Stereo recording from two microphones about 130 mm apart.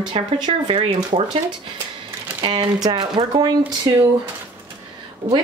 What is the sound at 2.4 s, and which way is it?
A woman's voice, 35° right (ahead or behind).